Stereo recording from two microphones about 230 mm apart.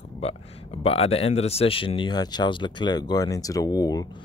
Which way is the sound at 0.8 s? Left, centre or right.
Left.